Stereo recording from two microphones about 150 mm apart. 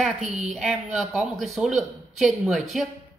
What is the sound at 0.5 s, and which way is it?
Speech, centre (ahead or behind).